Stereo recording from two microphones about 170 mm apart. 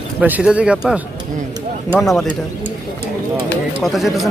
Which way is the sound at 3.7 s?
Centre (ahead or behind).